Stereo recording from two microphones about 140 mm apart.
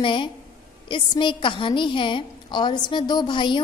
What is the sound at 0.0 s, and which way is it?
A woman's voice, 35° left (ahead or behind).